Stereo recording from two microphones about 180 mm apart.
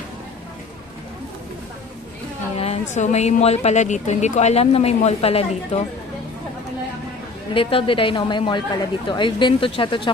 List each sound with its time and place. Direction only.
2.5 s a woman's voice: 35° left (ahead or behind)
7.5 s speech: 30° left (ahead or behind)